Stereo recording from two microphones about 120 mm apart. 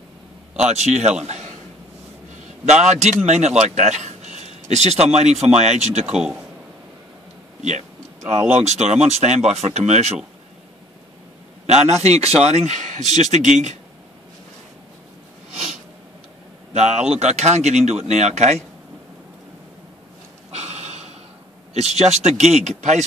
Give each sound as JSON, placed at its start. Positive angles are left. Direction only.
{"t": 0.7, "sound": "a man's voice", "side_deg": -70}
{"t": 2.6, "sound": "a man's voice", "side_deg": -70}
{"t": 6.0, "sound": "speech", "side_deg": -5}
{"t": 8.6, "sound": "a man's voice", "side_deg": -70}
{"t": 11.6, "sound": "a man's voice", "side_deg": -65}
{"t": 16.7, "sound": "a man's voice", "side_deg": -70}
{"t": 20.5, "sound": "a sound", "side_deg": -65}
{"t": 21.7, "sound": "a man's voice", "side_deg": -65}